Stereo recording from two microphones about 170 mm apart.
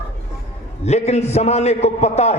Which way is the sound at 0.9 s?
40° left (ahead or behind).